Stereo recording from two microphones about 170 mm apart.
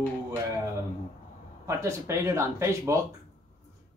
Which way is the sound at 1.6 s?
15° right (ahead or behind).